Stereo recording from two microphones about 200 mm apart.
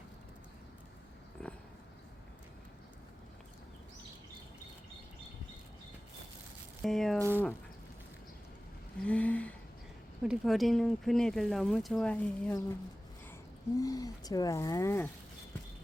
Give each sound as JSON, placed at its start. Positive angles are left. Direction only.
{"t": 1.4, "sound": "a sound", "side_deg": 5}
{"t": 6.8, "sound": "speech", "side_deg": 0}
{"t": 7.2, "sound": "speech", "side_deg": -10}
{"t": 9.0, "sound": "a sound", "side_deg": 5}
{"t": 10.2, "sound": "speech", "side_deg": 0}
{"t": 13.7, "sound": "speech", "side_deg": 15}